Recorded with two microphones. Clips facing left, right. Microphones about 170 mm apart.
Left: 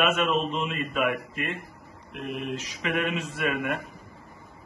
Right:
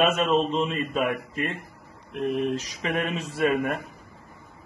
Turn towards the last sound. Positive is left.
turn(degrees=-35)  # may be behind; listen again after turning